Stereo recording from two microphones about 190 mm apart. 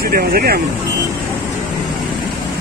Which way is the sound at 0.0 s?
55° right (ahead or behind).